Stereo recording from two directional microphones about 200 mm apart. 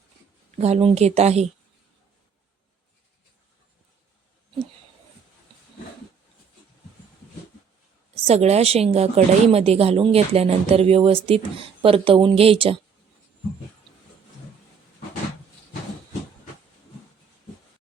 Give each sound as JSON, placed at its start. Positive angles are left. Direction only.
{"t": 0.6, "sound": "a woman's voice", "side_deg": -30}
{"t": 8.2, "sound": "a woman's voice", "side_deg": -30}